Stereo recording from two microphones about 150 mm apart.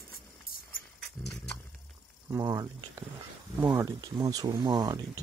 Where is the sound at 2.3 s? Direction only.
25° right (ahead or behind).